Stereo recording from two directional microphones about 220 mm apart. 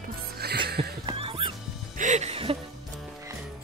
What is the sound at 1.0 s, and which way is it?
Music, 25° right (ahead or behind).